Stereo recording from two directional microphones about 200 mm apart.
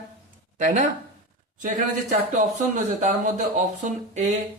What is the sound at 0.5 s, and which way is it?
Speech, 35° right (ahead or behind).